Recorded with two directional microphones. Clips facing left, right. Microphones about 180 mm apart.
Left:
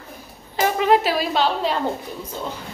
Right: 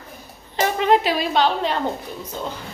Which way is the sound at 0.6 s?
5° left (ahead or behind).